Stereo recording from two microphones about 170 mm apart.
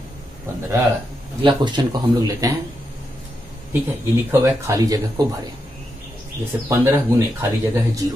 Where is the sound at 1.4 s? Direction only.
30° right (ahead or behind).